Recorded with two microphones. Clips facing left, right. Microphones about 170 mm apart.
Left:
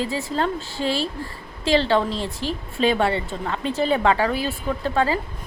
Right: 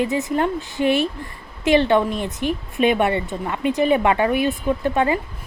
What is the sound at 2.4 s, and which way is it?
Speech, 60° right (ahead or behind).